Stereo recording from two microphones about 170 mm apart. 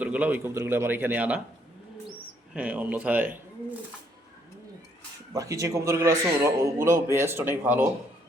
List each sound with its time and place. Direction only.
0.0 s a man's voice: 10° right (ahead or behind)
2.5 s a man's voice: 5° right (ahead or behind)
5.3 s a man's voice: 20° right (ahead or behind)